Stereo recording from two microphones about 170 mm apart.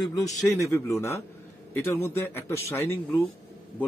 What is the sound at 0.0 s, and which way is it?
A man's voice, 20° left (ahead or behind).